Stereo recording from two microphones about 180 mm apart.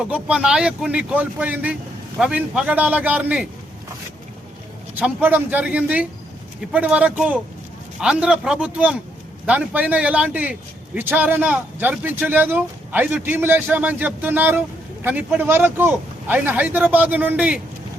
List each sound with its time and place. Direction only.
0.1 s a man's voice: 5° right (ahead or behind)
4.9 s a man's voice: 10° right (ahead or behind)